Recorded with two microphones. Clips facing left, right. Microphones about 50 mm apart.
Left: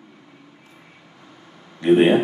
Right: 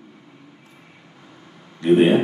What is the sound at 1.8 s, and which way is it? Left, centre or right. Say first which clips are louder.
Speech: even; left.